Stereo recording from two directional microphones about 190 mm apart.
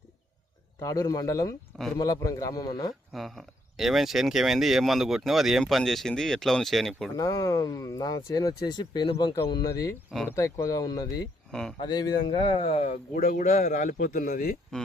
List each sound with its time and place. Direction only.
0.8 s speech: 15° left (ahead or behind)
3.1 s speech: centre (ahead or behind)
7.2 s speech: 20° left (ahead or behind)
13.1 s a man's voice: 45° left (ahead or behind)
14.7 s speech: 5° left (ahead or behind)